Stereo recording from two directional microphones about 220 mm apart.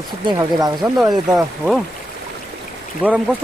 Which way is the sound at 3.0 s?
5° right (ahead or behind).